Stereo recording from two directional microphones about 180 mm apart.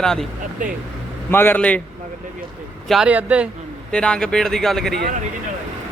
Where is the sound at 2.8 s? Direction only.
5° right (ahead or behind).